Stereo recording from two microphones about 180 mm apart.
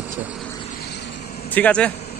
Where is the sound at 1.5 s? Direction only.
5° left (ahead or behind).